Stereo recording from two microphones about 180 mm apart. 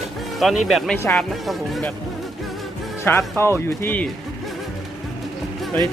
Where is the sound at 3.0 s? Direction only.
15° left (ahead or behind).